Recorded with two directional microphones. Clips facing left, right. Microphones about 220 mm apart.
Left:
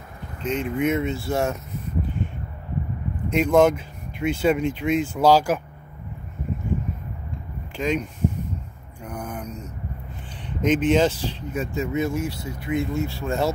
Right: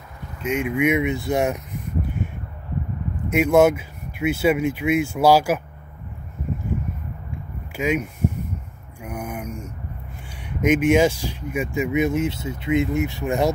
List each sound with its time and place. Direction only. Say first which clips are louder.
0.4 s speech: right 2 dB; 10° right (ahead or behind)
3.3 s speech: right 2 dB; 10° right (ahead or behind)
7.7 s speech: right 2 dB; 10° right (ahead or behind)
9.0 s a sound: right 2 dB; 10° right (ahead or behind)
10.6 s speech: right 2 dB; 10° right (ahead or behind)